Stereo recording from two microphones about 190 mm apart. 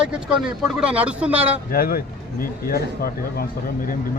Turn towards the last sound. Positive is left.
turn(degrees=50)  # may be behind; listen again after turning